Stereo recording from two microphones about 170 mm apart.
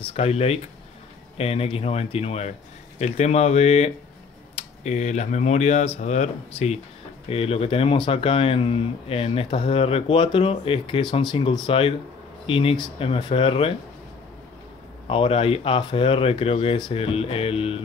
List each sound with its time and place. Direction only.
0.1 s speech: 40° left (ahead or behind)
15.0 s speech: 35° left (ahead or behind)